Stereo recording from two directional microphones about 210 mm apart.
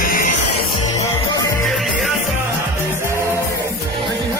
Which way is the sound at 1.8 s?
Centre (ahead or behind).